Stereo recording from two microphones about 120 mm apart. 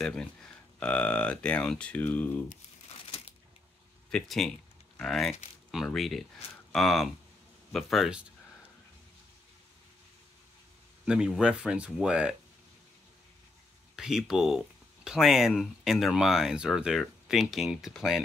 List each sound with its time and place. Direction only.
0.0 s speech: 5° left (ahead or behind)
2.9 s crumpling: 55° left (ahead or behind)
4.1 s speech: 5° left (ahead or behind)
11.1 s speech: 5° right (ahead or behind)
13.9 s speech: 5° right (ahead or behind)